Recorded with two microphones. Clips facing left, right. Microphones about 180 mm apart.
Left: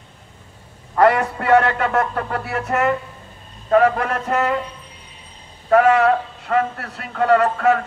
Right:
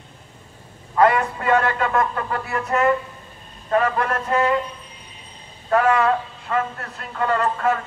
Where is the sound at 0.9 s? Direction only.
65° left (ahead or behind).